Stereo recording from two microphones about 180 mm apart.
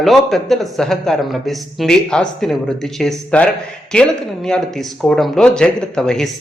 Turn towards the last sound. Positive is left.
turn(degrees=5)  # may be behind; listen again after turning